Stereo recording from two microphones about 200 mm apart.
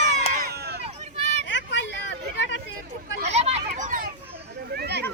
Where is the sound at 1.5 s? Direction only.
65° left (ahead or behind).